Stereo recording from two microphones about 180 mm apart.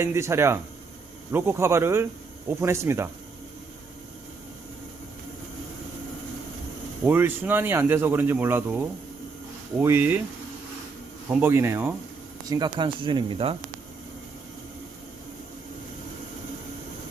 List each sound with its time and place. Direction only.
0.0 s speech: 15° right (ahead or behind)
7.0 s speech: 10° right (ahead or behind)
11.3 s speech: 10° right (ahead or behind)
12.5 s speech: 25° right (ahead or behind)